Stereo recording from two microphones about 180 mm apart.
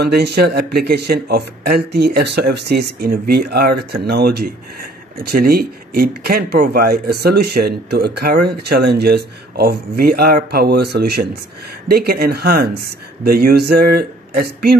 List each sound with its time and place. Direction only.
0.0 s speech: 65° right (ahead or behind)